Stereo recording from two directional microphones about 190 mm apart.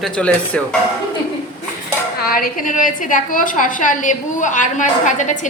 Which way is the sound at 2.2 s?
50° left (ahead or behind).